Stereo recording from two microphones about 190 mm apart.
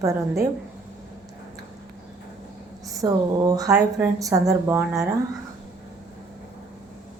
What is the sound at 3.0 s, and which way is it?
A woman's voice, 20° right (ahead or behind).